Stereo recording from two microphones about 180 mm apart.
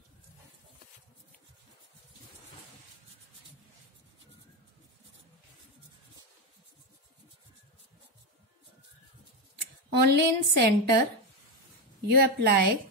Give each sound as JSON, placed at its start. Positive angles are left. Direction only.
{"t": 10.0, "sound": "a woman's voice", "side_deg": -70}
{"t": 12.1, "sound": "a woman's voice", "side_deg": -60}